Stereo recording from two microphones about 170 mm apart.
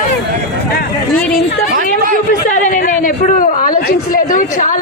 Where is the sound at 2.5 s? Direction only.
50° left (ahead or behind).